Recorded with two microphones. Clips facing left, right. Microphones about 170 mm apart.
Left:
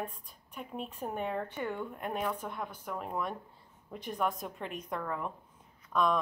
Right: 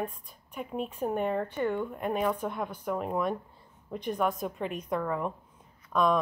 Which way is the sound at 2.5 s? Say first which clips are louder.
Right 7 dB; 15° right (ahead or behind).